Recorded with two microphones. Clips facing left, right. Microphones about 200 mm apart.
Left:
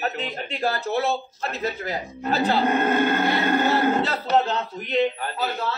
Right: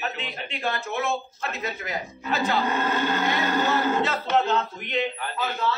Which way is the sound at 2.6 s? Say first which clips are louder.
Left 5 dB; 55° left (ahead or behind).